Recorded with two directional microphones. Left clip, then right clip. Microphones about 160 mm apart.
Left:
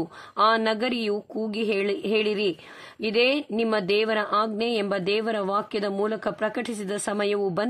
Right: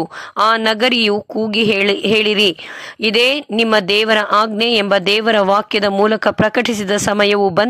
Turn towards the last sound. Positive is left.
turn(degrees=-35)  # may be behind; listen again after turning